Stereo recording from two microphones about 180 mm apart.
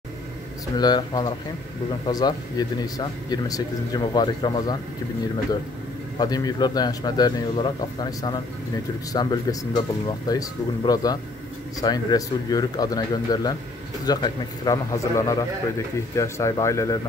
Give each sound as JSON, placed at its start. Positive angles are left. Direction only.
{"t": 0.7, "sound": "speech", "side_deg": 20}
{"t": 6.1, "sound": "speech", "side_deg": 20}